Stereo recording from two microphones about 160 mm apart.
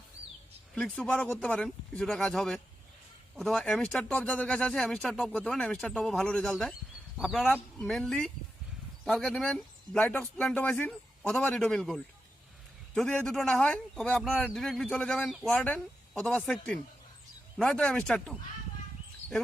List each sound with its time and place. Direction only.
0.8 s speech: 10° left (ahead or behind)